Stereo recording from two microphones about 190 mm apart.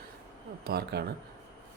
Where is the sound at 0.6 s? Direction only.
55° right (ahead or behind).